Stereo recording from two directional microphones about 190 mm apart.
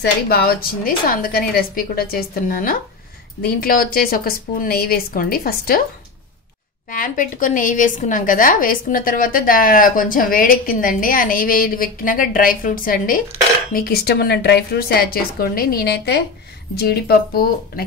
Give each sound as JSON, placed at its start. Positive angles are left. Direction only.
{"t": 0.0, "sound": "a woman's voice", "side_deg": 55}
{"t": 6.9, "sound": "a woman's voice", "side_deg": 45}